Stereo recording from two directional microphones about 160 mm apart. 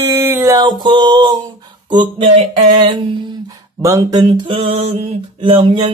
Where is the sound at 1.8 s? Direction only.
30° right (ahead or behind).